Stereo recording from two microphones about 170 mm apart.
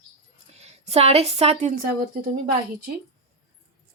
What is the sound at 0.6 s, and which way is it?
A woman's voice, 40° right (ahead or behind).